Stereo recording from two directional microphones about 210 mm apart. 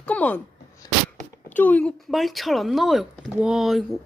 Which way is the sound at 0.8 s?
20° left (ahead or behind).